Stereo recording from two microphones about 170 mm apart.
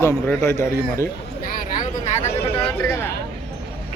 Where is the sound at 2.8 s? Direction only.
15° left (ahead or behind).